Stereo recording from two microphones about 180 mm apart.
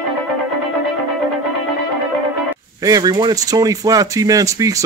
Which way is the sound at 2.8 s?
20° right (ahead or behind).